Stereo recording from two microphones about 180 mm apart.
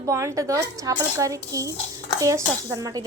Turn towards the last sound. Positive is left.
turn(degrees=-20)  # may be behind; listen again after turning